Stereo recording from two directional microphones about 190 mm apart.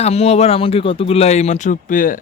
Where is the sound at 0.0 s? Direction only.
35° left (ahead or behind).